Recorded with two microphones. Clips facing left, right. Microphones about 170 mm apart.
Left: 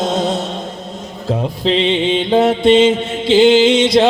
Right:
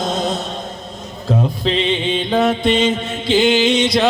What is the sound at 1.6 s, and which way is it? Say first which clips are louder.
Mantra: left 4 dB; 25° left (ahead or behind).